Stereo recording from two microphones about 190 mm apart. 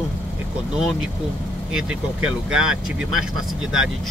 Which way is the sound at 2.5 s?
90° right.